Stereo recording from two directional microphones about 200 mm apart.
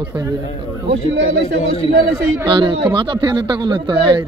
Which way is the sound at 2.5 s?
25° right (ahead or behind).